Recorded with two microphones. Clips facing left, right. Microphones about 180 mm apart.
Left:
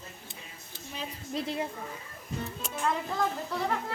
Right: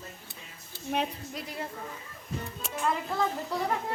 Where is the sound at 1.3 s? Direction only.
25° left (ahead or behind).